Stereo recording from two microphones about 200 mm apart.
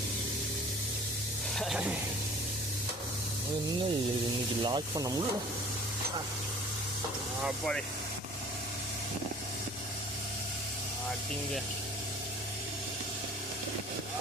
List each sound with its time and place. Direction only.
1.5 s speech: centre (ahead or behind)
4.6 s speech: 20° right (ahead or behind)
7.4 s speech: centre (ahead or behind)